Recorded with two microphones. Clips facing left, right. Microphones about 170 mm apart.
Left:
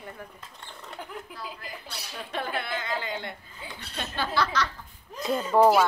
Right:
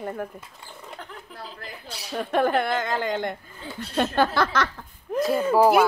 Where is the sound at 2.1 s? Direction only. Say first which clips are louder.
Right 11 dB; 50° right (ahead or behind).